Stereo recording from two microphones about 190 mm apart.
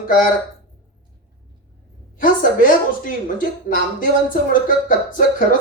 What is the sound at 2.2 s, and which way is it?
Speech, 45° left (ahead or behind).